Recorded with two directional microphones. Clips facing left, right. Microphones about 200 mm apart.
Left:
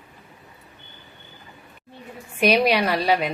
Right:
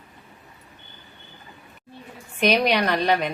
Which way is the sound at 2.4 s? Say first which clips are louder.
Left 1 dB; 10° left (ahead or behind).